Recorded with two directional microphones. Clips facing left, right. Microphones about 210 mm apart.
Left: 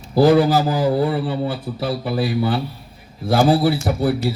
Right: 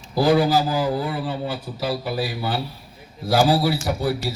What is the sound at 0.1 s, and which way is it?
A man's voice, 55° left (ahead or behind).